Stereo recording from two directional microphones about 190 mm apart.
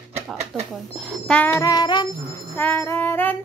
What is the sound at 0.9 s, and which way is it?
Music, centre (ahead or behind).